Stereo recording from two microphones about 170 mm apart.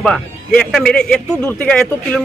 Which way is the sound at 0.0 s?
5° left (ahead or behind).